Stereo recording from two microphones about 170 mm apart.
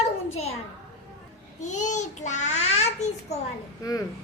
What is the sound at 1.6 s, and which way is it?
A child's voice, 45° left (ahead or behind).